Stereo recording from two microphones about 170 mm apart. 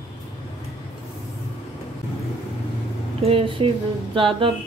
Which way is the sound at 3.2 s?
35° right (ahead or behind).